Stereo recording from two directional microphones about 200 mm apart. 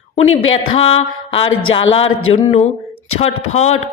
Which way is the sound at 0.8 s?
30° left (ahead or behind).